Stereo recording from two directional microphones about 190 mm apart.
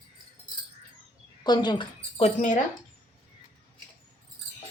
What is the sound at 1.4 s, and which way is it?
Speech, 20° left (ahead or behind).